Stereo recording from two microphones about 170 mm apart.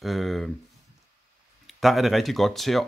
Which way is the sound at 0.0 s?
Centre (ahead or behind).